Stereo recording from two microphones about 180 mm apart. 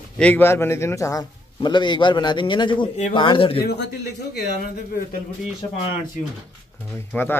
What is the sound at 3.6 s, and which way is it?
Speech, 65° left (ahead or behind).